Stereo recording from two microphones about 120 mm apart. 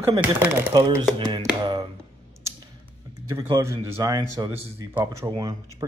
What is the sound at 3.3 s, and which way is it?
Speech, 25° right (ahead or behind).